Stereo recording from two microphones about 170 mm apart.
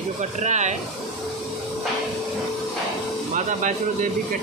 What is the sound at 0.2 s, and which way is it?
Speech, 45° right (ahead or behind).